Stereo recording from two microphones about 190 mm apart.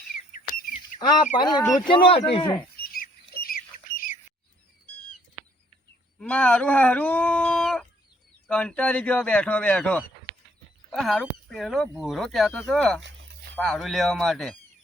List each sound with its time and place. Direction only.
0.3 s bird: 45° left (ahead or behind)
1.4 s speech: 20° left (ahead or behind)
2.8 s squawk: 50° left (ahead or behind)
6.1 s speech: 5° left (ahead or behind)